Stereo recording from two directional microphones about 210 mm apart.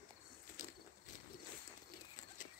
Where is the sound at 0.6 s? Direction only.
35° left (ahead or behind).